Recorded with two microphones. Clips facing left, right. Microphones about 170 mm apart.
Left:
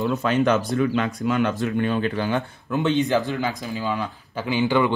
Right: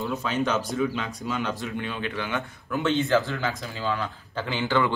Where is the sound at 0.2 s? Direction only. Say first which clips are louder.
Left 6 dB; 60° left (ahead or behind); by 2.5 s 35° left (ahead or behind).